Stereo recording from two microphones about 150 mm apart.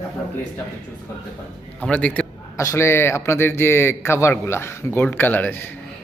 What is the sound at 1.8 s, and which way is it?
Speech, 10° left (ahead or behind).